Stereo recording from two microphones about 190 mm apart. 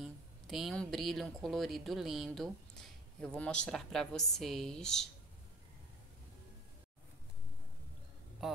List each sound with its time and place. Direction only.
0.0 s speech: centre (ahead or behind)